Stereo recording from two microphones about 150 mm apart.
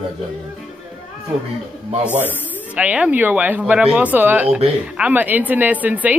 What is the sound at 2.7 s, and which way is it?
A woman's voice, 10° right (ahead or behind).